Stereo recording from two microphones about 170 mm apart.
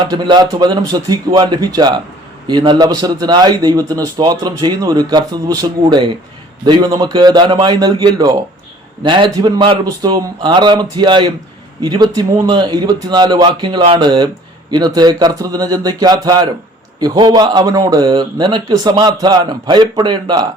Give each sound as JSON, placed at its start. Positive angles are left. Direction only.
{"t": 0.0, "sound": "a man's voice", "side_deg": -25}